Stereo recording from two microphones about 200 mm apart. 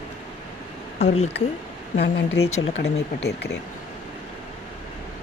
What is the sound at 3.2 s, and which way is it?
Speech, 55° left (ahead or behind).